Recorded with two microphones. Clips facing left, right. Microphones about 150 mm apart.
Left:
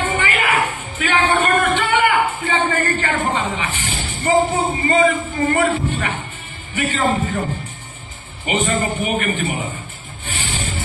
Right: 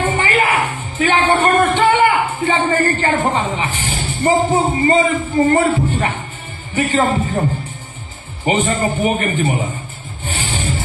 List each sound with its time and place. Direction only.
0.0 s music: 40° right (ahead or behind)
0.9 s a sound: 35° right (ahead or behind)
4.8 s speech: 35° right (ahead or behind)
8.5 s speech: 35° right (ahead or behind)
10.2 s music: 35° right (ahead or behind)